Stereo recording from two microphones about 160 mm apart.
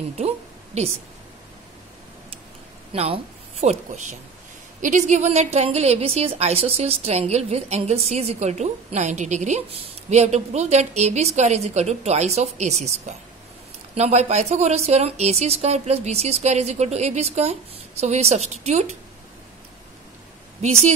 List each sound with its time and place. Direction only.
2.9 s speech: 35° right (ahead or behind)
3.6 s a woman's voice: 50° right (ahead or behind)
13.9 s a woman's voice: 45° right (ahead or behind)
20.6 s a woman's voice: 45° right (ahead or behind)